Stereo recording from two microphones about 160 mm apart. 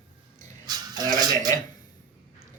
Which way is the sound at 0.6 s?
25° right (ahead or behind).